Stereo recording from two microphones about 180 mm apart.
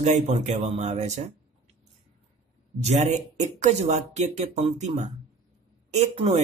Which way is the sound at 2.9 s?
40° right (ahead or behind).